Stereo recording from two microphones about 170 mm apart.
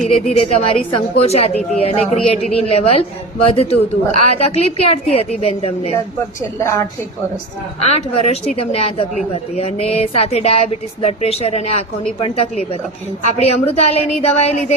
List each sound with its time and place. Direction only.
0.0 s a woman's voice: 40° left (ahead or behind)
6.6 s a woman's voice: 15° left (ahead or behind)
7.8 s a woman's voice: 40° left (ahead or behind)